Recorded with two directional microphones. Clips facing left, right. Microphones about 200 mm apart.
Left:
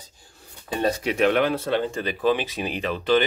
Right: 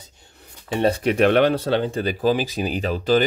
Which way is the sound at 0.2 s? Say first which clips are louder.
Right 1 dB; 20° right (ahead or behind).